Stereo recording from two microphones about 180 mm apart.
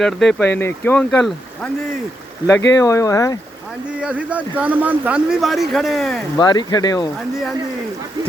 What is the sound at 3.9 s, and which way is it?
Speech, 5° right (ahead or behind).